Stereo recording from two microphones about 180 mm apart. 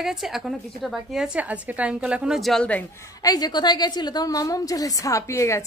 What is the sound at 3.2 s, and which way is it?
A woman's voice, 20° left (ahead or behind).